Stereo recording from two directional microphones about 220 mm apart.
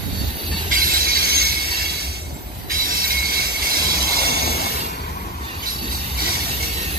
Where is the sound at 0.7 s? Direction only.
40° right (ahead or behind).